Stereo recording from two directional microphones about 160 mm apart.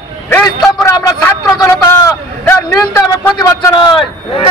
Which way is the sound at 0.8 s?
20° left (ahead or behind).